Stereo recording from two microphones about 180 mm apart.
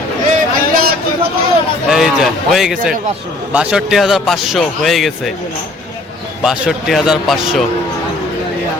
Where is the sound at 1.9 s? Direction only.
Centre (ahead or behind).